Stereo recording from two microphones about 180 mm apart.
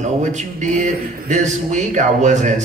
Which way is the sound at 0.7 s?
45° right (ahead or behind).